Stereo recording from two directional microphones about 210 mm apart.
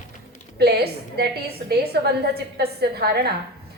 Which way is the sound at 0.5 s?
50° right (ahead or behind).